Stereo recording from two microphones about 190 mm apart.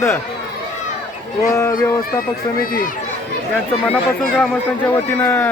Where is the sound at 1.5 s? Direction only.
15° left (ahead or behind).